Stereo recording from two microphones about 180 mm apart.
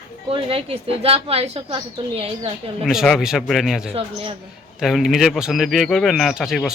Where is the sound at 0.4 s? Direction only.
30° right (ahead or behind).